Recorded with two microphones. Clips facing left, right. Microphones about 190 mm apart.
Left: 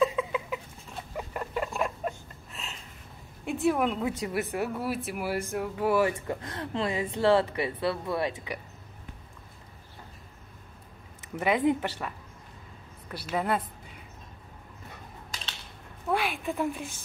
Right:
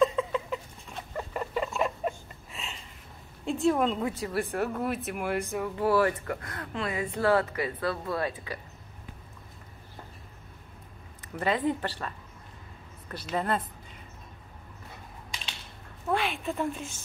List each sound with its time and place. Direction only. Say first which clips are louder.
0.0 s a sound: right 1 dB; 10° left (ahead or behind)
1.1 s rodents: right 2 dB; centre (ahead or behind)
1.8 s a sound: right 2 dB; centre (ahead or behind)
3.6 s a woman's voice: right 1 dB; 5° left (ahead or behind)
4.0 s speech: even; 15° left (ahead or behind)
11.3 s speech: left 3 dB; 15° left (ahead or behind)
13.1 s speech: left 1 dB; 10° left (ahead or behind)
16.1 s a sound: even; centre (ahead or behind)
16.4 s speech: left 1 dB; 10° left (ahead or behind)